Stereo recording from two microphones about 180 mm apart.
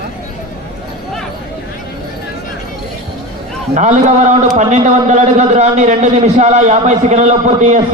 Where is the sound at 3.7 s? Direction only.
40° right (ahead or behind).